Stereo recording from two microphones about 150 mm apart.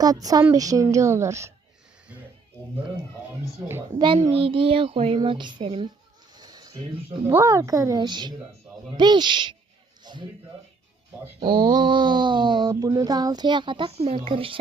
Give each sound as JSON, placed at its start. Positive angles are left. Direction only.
{"t": 0.0, "sound": "speech", "side_deg": -25}
{"t": 3.9, "sound": "speech", "side_deg": -30}
{"t": 6.3, "sound": "a sound", "side_deg": -25}
{"t": 7.3, "sound": "a man's voice", "side_deg": -20}
{"t": 11.3, "sound": "speech", "side_deg": -30}